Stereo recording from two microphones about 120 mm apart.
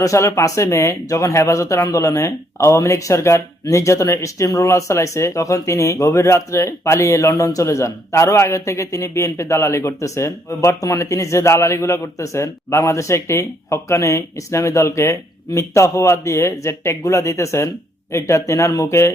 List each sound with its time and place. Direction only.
0.0 s speech: 25° left (ahead or behind)